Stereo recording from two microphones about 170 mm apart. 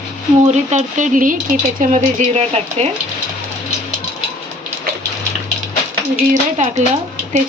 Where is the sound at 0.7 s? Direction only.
45° right (ahead or behind).